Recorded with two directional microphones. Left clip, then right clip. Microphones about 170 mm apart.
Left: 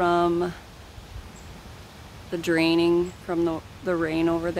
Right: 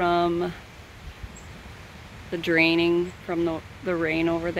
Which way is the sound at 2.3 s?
5° left (ahead or behind).